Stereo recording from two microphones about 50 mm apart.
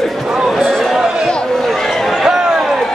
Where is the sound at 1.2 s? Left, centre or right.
Centre.